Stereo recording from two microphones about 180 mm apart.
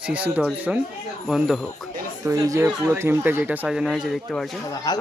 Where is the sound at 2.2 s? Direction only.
20° right (ahead or behind); by 4.6 s centre (ahead or behind).